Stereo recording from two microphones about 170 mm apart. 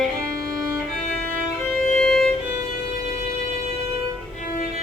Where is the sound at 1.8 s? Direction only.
5° left (ahead or behind).